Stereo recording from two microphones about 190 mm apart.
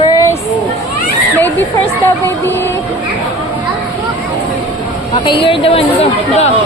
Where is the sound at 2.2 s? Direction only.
10° left (ahead or behind).